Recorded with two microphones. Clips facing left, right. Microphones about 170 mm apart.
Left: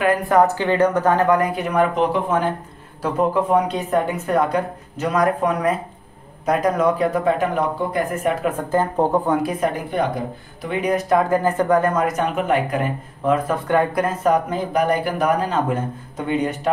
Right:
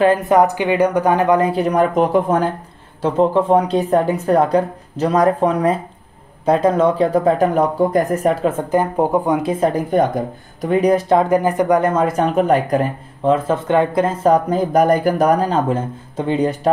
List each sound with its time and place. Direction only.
0.0 s speech: 25° right (ahead or behind)
1.5 s speech: 35° right (ahead or behind)
3.0 s speech: 25° right (ahead or behind)
8.6 s speech: 15° right (ahead or behind); by 12.9 s 40° right (ahead or behind)
13.2 s speech: 25° right (ahead or behind)